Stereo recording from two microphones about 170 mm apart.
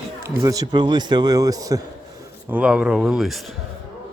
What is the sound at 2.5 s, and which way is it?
A man's voice, 5° right (ahead or behind).